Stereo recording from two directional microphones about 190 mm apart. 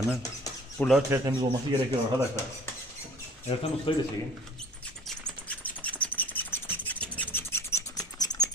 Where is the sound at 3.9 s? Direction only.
30° left (ahead or behind).